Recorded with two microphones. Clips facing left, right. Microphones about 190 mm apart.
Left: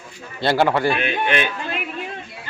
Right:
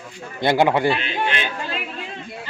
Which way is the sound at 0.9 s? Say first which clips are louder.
Left 2 dB; 55° left (ahead or behind).